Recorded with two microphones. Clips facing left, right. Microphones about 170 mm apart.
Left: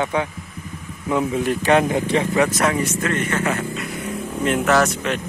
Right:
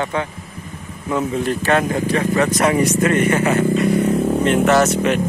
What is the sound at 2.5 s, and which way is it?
Speech, centre (ahead or behind).